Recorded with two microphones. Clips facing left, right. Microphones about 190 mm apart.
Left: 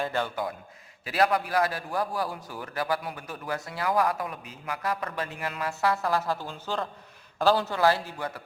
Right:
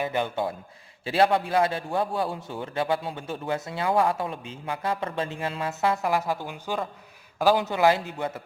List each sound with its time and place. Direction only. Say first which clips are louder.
0.0 s a man's voice: right 3 dB; 15° right (ahead or behind)